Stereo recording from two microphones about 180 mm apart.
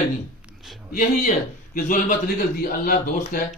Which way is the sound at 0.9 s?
50° left (ahead or behind).